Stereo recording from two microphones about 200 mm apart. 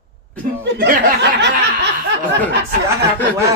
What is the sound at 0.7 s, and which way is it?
Speech, 45° right (ahead or behind).